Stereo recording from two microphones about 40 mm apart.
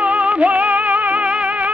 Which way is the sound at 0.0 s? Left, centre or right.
Right.